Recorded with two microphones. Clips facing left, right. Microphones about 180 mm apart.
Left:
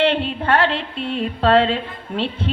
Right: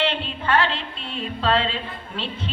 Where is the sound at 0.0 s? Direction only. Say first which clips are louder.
Left 6 dB; 60° left (ahead or behind).